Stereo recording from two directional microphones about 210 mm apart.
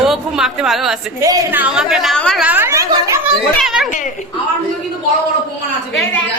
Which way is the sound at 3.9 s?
35° left (ahead or behind).